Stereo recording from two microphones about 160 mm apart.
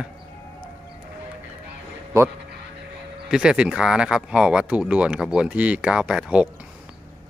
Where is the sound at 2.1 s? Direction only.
20° right (ahead or behind).